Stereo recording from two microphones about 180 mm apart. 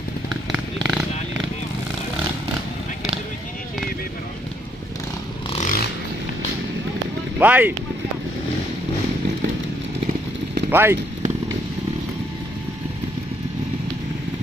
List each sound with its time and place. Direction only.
0.5 s a sound: centre (ahead or behind)
5.5 s vehicle: 40° left (ahead or behind)
7.3 s speech: 10° right (ahead or behind)
10.7 s speech: 15° right (ahead or behind)